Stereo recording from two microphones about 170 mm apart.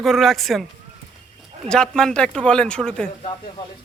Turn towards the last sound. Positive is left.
turn(degrees=5)  # may be behind; listen again after turning